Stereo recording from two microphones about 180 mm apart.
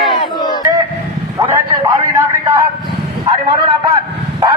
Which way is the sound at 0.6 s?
20° right (ahead or behind).